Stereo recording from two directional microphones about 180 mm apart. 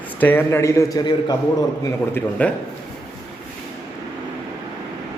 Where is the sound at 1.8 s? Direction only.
10° left (ahead or behind).